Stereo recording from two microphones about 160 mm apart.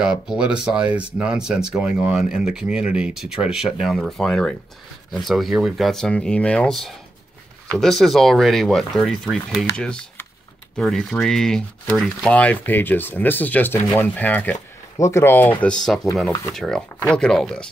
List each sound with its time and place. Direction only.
0.0 s speech: 5° right (ahead or behind)